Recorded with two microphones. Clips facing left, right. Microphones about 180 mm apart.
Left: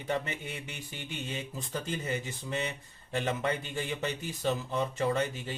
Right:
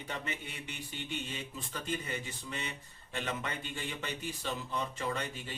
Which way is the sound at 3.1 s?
40° left (ahead or behind).